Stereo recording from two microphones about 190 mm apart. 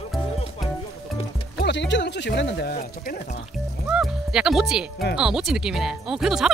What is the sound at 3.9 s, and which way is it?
Music, 5° right (ahead or behind).